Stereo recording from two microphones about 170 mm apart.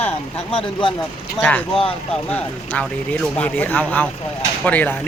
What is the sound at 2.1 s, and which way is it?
Speech, 10° left (ahead or behind).